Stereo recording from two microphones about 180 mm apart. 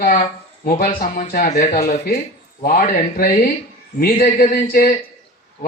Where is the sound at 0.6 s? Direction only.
55° left (ahead or behind).